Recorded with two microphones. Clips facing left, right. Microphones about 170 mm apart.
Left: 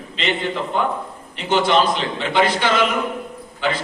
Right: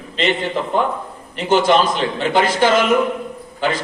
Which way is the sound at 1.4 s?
45° right (ahead or behind).